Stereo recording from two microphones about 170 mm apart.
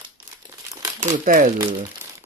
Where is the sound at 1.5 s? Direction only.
20° right (ahead or behind).